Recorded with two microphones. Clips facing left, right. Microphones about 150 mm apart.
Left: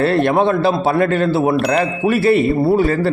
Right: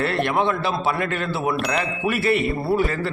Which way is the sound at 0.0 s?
35° left (ahead or behind).